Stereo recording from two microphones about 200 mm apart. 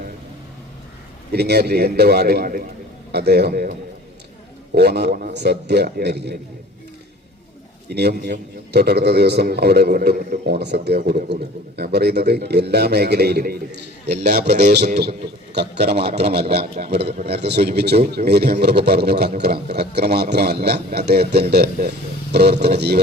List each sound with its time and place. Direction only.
1.3 s a man's voice: 55° right (ahead or behind)
7.9 s a man's voice: 55° right (ahead or behind)